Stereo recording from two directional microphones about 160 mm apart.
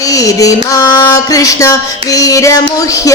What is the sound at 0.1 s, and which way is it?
Speech, 20° left (ahead or behind).